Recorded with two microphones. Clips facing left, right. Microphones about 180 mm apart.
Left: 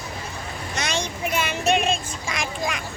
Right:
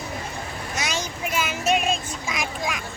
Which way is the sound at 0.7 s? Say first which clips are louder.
Left 2 dB; centre (ahead or behind).